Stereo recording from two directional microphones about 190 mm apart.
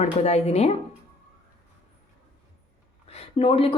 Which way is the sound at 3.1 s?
30° left (ahead or behind).